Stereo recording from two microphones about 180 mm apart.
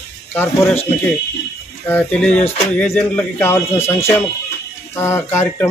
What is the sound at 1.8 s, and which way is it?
Speech, 5° left (ahead or behind).